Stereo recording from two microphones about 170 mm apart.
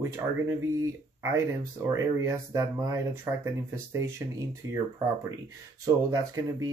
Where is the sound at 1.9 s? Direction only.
15° right (ahead or behind).